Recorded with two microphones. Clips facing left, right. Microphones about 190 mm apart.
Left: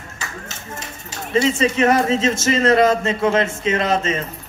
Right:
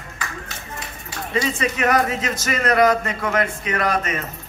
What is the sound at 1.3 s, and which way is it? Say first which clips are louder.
Speech: left 6 dB; 25° left (ahead or behind).